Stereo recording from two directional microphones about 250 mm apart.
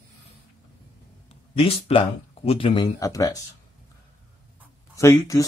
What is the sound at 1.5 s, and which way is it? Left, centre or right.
Speech, left.